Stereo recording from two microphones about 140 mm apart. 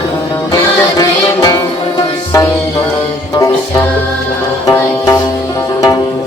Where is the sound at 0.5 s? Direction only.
25° left (ahead or behind).